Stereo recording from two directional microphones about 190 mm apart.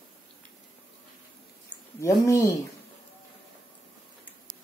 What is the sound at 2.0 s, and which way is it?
Speech, 15° left (ahead or behind).